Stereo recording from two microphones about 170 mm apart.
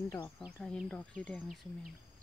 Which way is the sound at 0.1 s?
20° left (ahead or behind).